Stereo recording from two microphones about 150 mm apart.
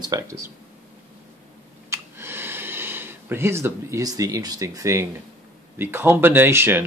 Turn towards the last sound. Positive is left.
turn(degrees=-15)  # may be behind; listen again after turning